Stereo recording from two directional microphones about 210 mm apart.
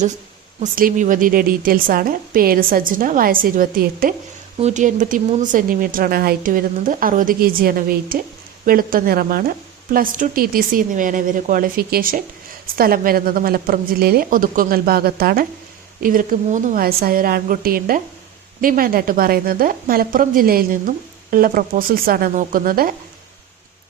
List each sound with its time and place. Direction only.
0.6 s a woman's voice: 40° right (ahead or behind)